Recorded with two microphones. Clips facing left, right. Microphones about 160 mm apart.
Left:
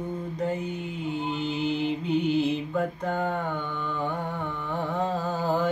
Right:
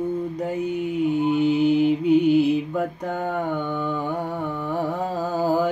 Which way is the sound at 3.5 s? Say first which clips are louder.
Right 6 dB; 10° right (ahead or behind).